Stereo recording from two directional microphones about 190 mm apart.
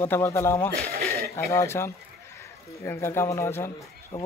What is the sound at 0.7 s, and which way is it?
Speech, 55° right (ahead or behind).